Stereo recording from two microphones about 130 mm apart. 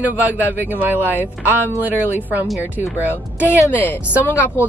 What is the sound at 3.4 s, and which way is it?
Speech, 15° left (ahead or behind).